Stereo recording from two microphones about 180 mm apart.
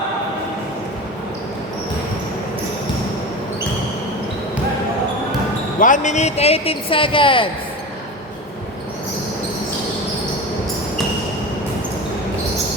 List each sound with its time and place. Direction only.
5.8 s speech: 45° left (ahead or behind); by 7.4 s 30° left (ahead or behind)